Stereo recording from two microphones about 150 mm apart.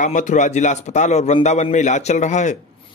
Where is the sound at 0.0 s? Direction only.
55° left (ahead or behind).